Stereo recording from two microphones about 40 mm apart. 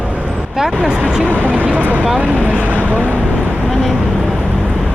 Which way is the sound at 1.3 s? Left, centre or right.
Right.